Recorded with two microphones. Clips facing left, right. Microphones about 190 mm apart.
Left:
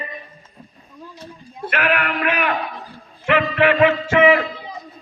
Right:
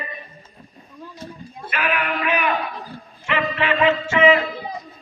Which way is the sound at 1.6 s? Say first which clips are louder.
Left 3 dB; 65° left (ahead or behind).